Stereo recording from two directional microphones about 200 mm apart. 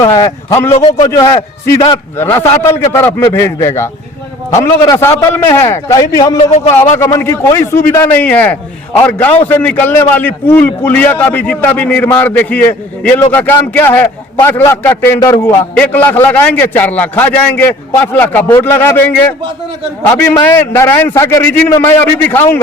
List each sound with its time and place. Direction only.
0.0 s a man's voice: 15° left (ahead or behind)
0.7 s a man's voice: 30° left (ahead or behind)
1.0 s a man's voice: 20° left (ahead or behind)